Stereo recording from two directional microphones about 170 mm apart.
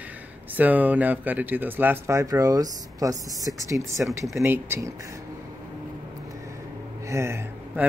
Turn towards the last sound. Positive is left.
turn(degrees=-15)  # may be behind; listen again after turning